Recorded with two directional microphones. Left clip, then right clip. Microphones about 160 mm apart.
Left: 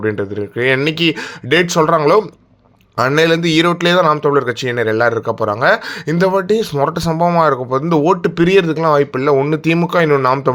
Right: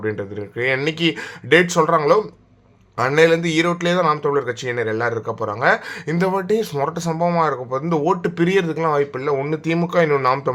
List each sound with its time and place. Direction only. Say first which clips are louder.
0.1 s speech: left 7 dB; 35° left (ahead or behind)